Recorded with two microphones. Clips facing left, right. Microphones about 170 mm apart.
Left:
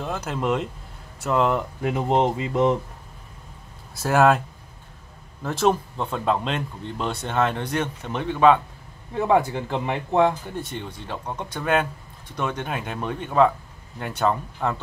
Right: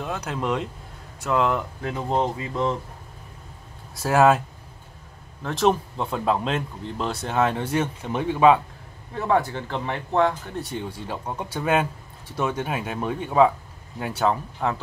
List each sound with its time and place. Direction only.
0.0 s speech: centre (ahead or behind)
1.8 s speech: 15° left (ahead or behind)
4.0 s speech: centre (ahead or behind)
5.4 s speech: 5° left (ahead or behind)
9.1 s speech: 15° left (ahead or behind)
10.5 s speech: centre (ahead or behind)